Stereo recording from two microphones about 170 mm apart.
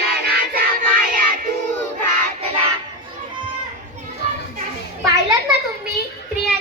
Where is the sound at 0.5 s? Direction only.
55° right (ahead or behind).